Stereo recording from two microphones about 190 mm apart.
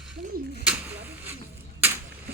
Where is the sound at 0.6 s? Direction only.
5° right (ahead or behind).